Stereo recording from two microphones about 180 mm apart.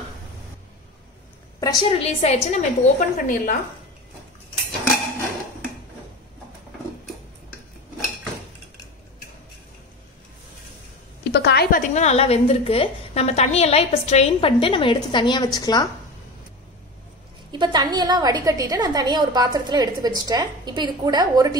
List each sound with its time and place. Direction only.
1.6 s a woman's voice: 20° left (ahead or behind)
1.9 s a woman's voice: 35° left (ahead or behind); by 3.5 s 50° left (ahead or behind)
11.2 s a sound: 70° left (ahead or behind)
11.9 s a woman's voice: 40° left (ahead or behind); by 15.9 s 20° left (ahead or behind)
17.5 s a woman's voice: 25° right (ahead or behind)